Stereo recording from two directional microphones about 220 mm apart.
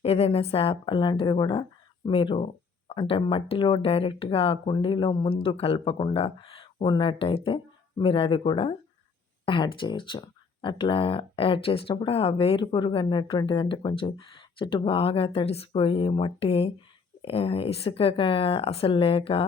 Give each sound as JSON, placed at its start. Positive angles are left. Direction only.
{"t": 0.0, "sound": "speech", "side_deg": 25}